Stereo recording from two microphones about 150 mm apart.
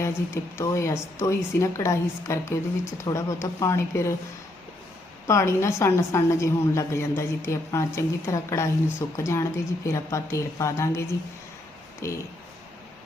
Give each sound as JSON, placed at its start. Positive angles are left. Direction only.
{"t": 0.5, "sound": "a woman's voice", "side_deg": 20}
{"t": 5.3, "sound": "a woman's voice", "side_deg": 20}
{"t": 12.0, "sound": "speech", "side_deg": 20}